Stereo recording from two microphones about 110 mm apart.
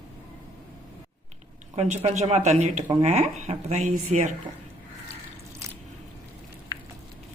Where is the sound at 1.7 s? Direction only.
90° right.